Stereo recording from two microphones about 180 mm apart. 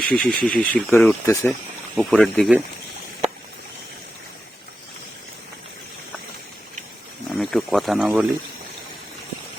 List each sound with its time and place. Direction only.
0.0 s speech: centre (ahead or behind)
2.0 s speech: centre (ahead or behind)
7.3 s a sound: centre (ahead or behind)